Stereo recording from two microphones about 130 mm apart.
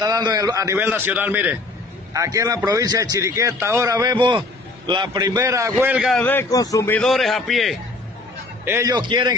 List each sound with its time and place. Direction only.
0.0 s a man's voice: 30° right (ahead or behind); by 1.6 s 15° right (ahead or behind)
2.1 s a man's voice: 25° right (ahead or behind)
5.9 s a man's voice: centre (ahead or behind)
6.5 s a man's voice: 25° left (ahead or behind)
6.9 s a man's voice: 5° left (ahead or behind)
8.6 s a man's voice: 15° right (ahead or behind)
8.9 s a man's voice: 35° right (ahead or behind)